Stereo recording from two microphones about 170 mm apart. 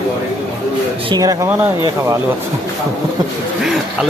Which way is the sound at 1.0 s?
20° right (ahead or behind).